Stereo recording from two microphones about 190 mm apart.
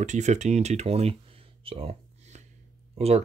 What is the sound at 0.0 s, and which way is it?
Speech, 40° right (ahead or behind).